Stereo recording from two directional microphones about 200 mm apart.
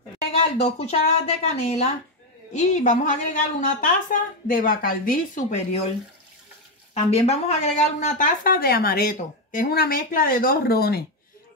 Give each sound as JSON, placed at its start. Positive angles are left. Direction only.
{"t": 0.3, "sound": "speech", "side_deg": 30}
{"t": 6.9, "sound": "speech", "side_deg": 30}